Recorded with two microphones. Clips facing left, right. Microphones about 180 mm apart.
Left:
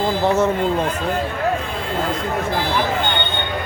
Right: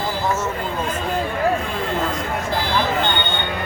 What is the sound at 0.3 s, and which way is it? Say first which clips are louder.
Speech: left 7 dB; 60° left (ahead or behind).